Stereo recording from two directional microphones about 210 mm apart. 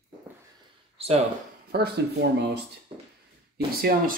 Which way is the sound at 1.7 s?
50° right (ahead or behind).